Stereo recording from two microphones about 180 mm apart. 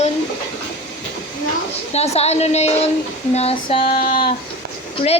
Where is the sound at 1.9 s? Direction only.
35° left (ahead or behind).